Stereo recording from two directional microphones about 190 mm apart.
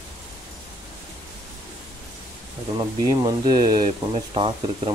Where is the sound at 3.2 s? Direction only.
20° right (ahead or behind).